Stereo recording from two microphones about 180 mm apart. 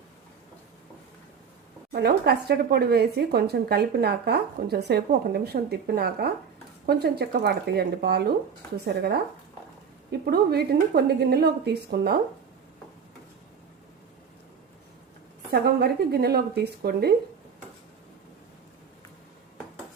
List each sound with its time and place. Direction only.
1.9 s speech: 60° right (ahead or behind)
15.5 s speech: 60° right (ahead or behind)